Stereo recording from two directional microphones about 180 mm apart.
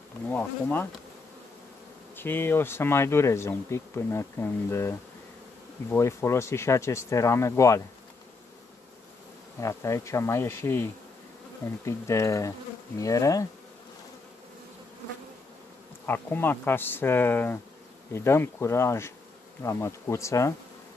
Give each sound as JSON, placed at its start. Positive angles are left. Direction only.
{"t": 0.3, "sound": "speech", "side_deg": 10}
{"t": 2.1, "sound": "speech", "side_deg": 10}
{"t": 9.6, "sound": "speech", "side_deg": 15}
{"t": 16.1, "sound": "speech", "side_deg": 10}